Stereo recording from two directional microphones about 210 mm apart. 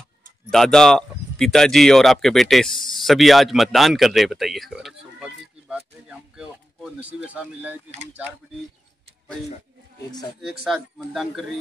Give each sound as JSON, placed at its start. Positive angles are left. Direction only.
{"t": 0.5, "sound": "speech", "side_deg": 0}
{"t": 7.9, "sound": "speech", "side_deg": -30}
{"t": 10.4, "sound": "speech", "side_deg": 0}